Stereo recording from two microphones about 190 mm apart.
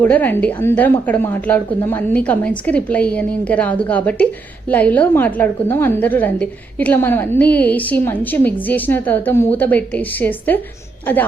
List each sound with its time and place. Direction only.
0.0 s a woman's voice: 10° left (ahead or behind)